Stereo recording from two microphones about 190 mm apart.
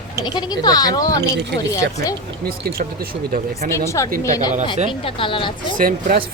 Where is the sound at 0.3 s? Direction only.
20° left (ahead or behind).